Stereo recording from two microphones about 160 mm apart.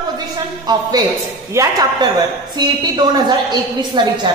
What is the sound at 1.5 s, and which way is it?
A woman's voice, 20° right (ahead or behind).